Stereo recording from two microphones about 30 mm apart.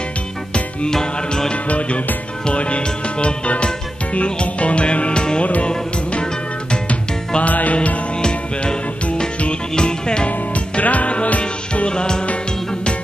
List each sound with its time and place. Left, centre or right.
1.7 s music: left
5.4 s music: left
6.9 s music: left
8.2 s music: left
9.8 s music: left
10.5 s music: left
11.7 s music: left